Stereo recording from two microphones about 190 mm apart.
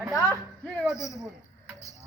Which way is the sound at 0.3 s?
5° left (ahead or behind).